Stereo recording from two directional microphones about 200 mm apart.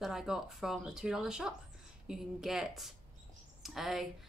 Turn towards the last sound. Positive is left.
turn(degrees=0)  # may be behind; listen again after turning